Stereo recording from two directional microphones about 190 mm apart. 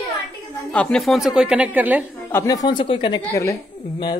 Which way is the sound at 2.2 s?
15° left (ahead or behind).